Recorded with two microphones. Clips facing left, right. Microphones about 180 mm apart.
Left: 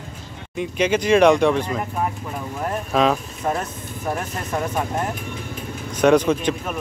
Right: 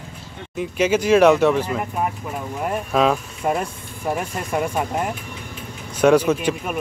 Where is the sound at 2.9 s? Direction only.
5° right (ahead or behind).